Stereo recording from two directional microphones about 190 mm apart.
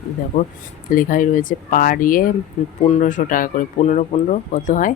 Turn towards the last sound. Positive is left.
turn(degrees=45)  # may be behind; listen again after turning